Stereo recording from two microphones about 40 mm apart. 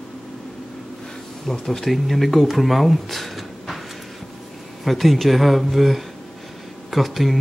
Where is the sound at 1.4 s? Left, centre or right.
Centre.